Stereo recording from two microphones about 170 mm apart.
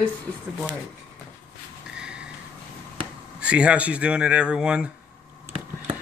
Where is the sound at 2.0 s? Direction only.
5° right (ahead or behind).